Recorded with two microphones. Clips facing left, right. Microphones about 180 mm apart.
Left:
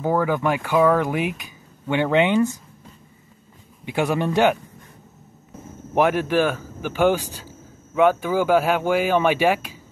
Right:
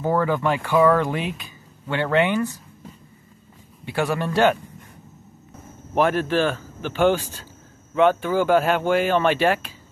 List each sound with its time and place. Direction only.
0.0 s a man's voice: 10° left (ahead or behind)
3.8 s a man's voice: 15° left (ahead or behind)
5.9 s a man's voice: 15° left (ahead or behind)